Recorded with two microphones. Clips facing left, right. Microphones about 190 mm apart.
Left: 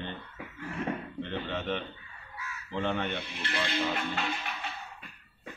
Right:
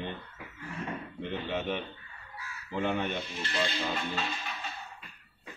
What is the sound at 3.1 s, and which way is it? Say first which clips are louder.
Speech: even; 65° left (ahead or behind).